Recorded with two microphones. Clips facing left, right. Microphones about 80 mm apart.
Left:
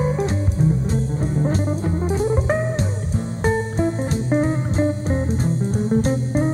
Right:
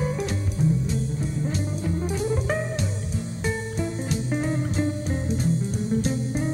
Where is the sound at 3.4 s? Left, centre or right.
Left.